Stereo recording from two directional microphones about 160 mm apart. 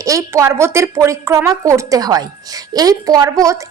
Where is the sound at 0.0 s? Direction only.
20° right (ahead or behind).